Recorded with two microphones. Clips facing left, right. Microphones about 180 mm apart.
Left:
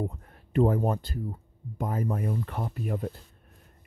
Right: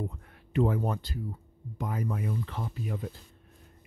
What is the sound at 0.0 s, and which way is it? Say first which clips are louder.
Speech: left 4 dB; 45° left (ahead or behind).